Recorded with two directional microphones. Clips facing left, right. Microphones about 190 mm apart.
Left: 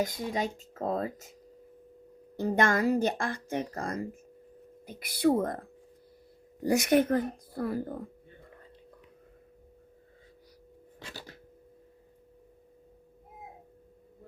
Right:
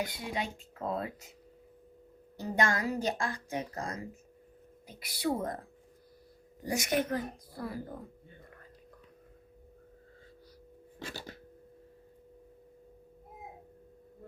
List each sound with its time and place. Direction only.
0.0 s speech: 40° left (ahead or behind)
2.3 s speech: 55° left (ahead or behind)
6.7 s a child's voice: 60° left (ahead or behind)